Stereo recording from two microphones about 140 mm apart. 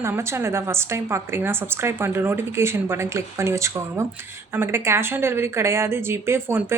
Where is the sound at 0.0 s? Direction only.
20° right (ahead or behind).